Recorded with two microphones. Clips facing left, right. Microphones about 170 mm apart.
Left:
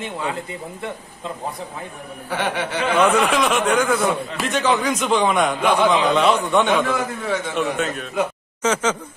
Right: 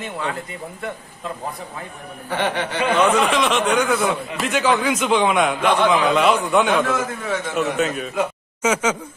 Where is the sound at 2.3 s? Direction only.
5° left (ahead or behind).